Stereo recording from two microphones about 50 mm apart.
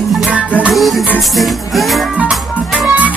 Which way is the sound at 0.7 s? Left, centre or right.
Centre.